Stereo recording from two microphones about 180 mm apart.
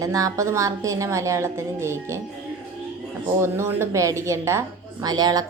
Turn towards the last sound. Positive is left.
turn(degrees=-20)  # may be behind; listen again after turning